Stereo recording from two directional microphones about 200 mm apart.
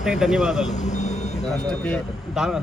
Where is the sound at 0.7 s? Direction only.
35° left (ahead or behind).